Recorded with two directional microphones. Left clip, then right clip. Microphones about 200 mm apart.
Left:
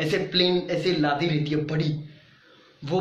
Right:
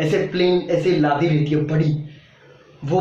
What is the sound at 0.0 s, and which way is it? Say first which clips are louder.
Speech: right 4 dB; 15° left (ahead or behind).